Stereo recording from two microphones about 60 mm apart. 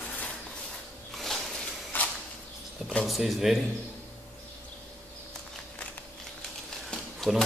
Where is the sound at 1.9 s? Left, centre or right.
Left.